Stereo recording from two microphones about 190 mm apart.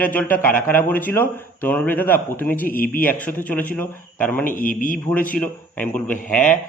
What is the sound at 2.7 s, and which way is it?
Speech, 50° left (ahead or behind).